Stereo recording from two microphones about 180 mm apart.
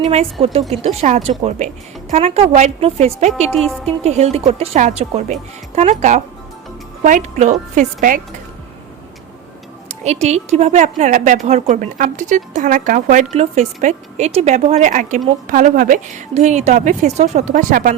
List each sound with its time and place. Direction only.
0.0 s speech: 35° right (ahead or behind)
3.5 s speech: 5° left (ahead or behind)
3.8 s a woman's voice: 35° right (ahead or behind)
9.9 s a woman's voice: 40° right (ahead or behind)